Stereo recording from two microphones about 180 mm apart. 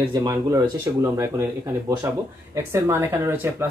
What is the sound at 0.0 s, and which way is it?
Speech, 15° right (ahead or behind).